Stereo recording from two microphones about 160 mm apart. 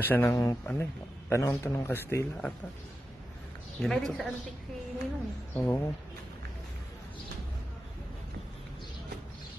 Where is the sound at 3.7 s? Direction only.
5° left (ahead or behind).